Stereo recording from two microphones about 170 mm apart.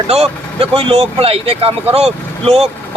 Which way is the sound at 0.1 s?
35° right (ahead or behind).